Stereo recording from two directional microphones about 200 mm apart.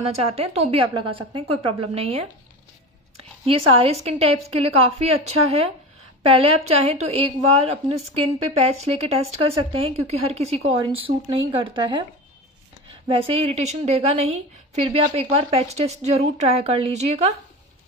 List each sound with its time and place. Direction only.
0.0 s a woman's voice: 30° right (ahead or behind)
3.2 s a woman's voice: 30° right (ahead or behind)
9.3 s a woman's voice: 30° right (ahead or behind)
13.1 s a woman's voice: 30° right (ahead or behind)